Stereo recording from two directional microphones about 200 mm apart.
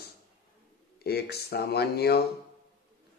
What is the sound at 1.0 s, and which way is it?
Speech, 50° left (ahead or behind).